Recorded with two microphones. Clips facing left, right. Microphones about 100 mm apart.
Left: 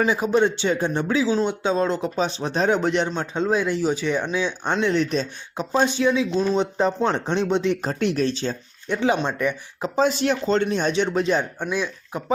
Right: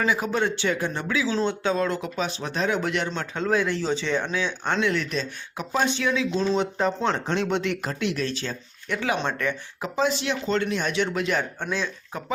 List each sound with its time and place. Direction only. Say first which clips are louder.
0.0 s speech: left 5 dB; 20° left (ahead or behind)
1.3 s speech: left 3 dB; 10° left (ahead or behind)
1.6 s speech: left 3 dB; 25° left (ahead or behind)
4.8 s speech: left 6 dB; 30° left (ahead or behind)
7.9 s speech: left 5 dB; 40° left (ahead or behind)
8.3 s speech: left 5 dB; 25° left (ahead or behind)
9.1 s speech: left 3 dB; 10° left (ahead or behind)
9.8 s speech: left 4 dB; 40° left (ahead or behind)
11.6 s speech: left 3 dB; 15° left (ahead or behind)